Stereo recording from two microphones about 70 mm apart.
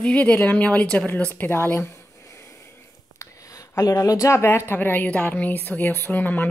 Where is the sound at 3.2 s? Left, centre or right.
Left.